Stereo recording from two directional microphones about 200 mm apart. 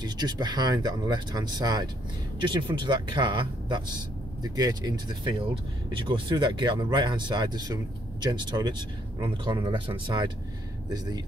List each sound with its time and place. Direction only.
0.0 s speech: 20° right (ahead or behind)